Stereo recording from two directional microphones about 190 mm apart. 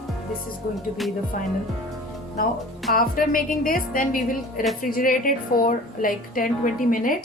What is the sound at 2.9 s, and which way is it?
A woman's voice, 50° left (ahead or behind).